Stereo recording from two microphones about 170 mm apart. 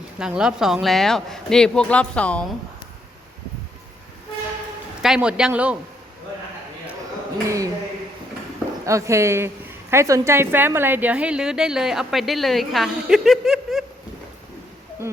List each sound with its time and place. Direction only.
0.2 s a woman's voice: 5° right (ahead or behind)
5.0 s a woman's voice: 5° right (ahead or behind)
7.4 s speech: 20° right (ahead or behind)
8.9 s a woman's voice: 15° right (ahead or behind); by 13.8 s centre (ahead or behind)